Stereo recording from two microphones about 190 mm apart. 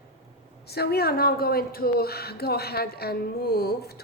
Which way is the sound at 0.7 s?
55° left (ahead or behind).